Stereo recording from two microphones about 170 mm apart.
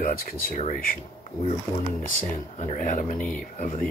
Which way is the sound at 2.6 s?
45° left (ahead or behind).